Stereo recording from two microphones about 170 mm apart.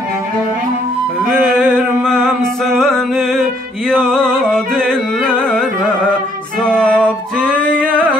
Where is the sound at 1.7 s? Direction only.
10° right (ahead or behind).